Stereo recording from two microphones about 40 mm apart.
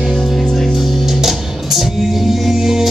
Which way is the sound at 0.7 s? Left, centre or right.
Centre.